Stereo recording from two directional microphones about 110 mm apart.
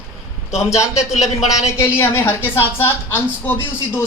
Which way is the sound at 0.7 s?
30° left (ahead or behind).